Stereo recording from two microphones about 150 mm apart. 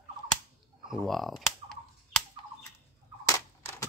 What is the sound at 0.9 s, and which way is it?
Speech, centre (ahead or behind).